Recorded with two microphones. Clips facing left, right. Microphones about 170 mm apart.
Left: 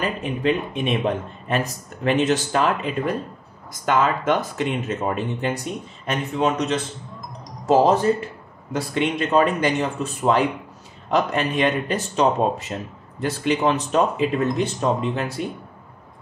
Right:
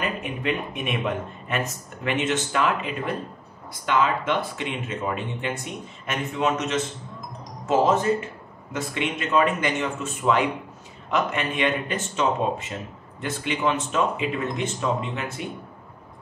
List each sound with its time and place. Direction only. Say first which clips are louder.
0.0 s speech: left 5 dB; 35° left (ahead or behind)